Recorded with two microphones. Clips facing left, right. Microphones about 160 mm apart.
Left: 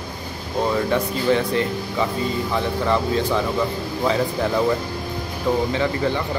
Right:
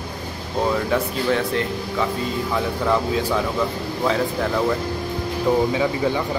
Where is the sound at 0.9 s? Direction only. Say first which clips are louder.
Left 1 dB; centre (ahead or behind).